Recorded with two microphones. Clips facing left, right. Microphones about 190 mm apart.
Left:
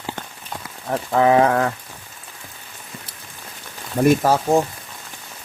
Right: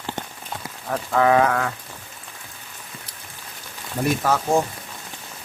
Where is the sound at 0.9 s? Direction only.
20° left (ahead or behind).